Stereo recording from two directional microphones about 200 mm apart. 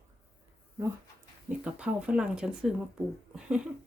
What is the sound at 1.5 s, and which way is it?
Speech, 5° right (ahead or behind).